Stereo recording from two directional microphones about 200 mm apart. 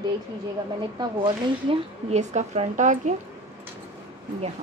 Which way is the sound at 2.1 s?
35° right (ahead or behind).